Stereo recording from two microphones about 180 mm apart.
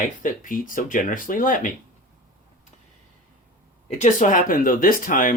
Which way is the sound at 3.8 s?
40° left (ahead or behind).